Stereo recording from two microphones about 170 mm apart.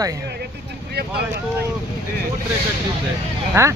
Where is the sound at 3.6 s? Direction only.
15° right (ahead or behind).